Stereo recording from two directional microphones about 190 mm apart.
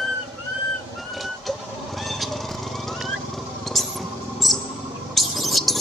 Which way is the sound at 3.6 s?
Centre (ahead or behind).